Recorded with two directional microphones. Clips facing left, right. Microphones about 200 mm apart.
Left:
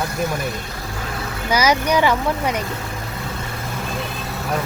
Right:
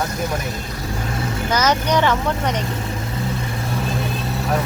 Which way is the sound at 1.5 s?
10° left (ahead or behind).